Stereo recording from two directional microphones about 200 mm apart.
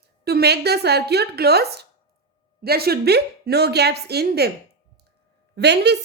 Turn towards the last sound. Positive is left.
turn(degrees=-55)  # may be behind; listen again after turning